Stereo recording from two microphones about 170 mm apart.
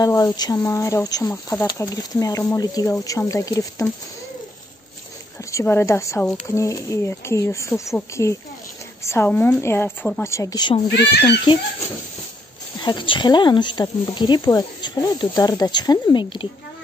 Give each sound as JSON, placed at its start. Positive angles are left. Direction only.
{"t": 0.0, "sound": "speech", "side_deg": 20}
{"t": 5.4, "sound": "speech", "side_deg": 20}
{"t": 10.9, "sound": "speech", "side_deg": 75}
{"t": 12.8, "sound": "speech", "side_deg": 30}